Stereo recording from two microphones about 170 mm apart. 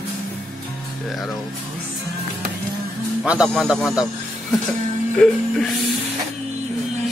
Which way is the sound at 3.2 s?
5° right (ahead or behind).